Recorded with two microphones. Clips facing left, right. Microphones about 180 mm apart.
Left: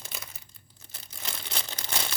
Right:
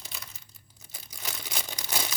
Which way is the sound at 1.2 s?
10° right (ahead or behind).